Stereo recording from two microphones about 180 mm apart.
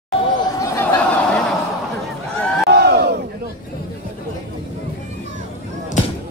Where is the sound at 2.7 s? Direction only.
65° right (ahead or behind).